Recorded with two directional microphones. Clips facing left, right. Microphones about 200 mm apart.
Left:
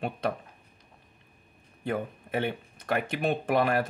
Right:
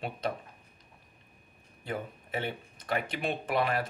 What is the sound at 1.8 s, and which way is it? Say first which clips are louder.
Speech: left 5 dB; 50° left (ahead or behind).